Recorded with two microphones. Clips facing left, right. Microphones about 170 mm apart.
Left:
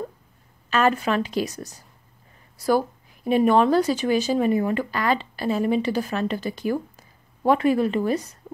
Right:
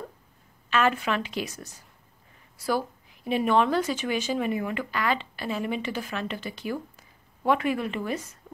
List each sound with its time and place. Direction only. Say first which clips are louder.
0.7 s a woman's voice: left 4 dB; 40° left (ahead or behind)